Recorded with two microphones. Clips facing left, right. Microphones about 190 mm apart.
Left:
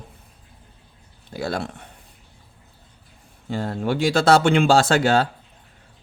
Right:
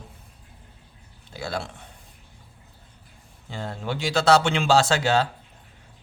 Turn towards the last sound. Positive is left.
turn(degrees=55)  # may be behind; listen again after turning